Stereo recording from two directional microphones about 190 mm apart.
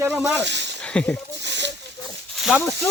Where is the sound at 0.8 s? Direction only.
5° left (ahead or behind).